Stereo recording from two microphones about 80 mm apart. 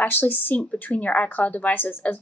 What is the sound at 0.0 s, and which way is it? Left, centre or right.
A woman's voice, left.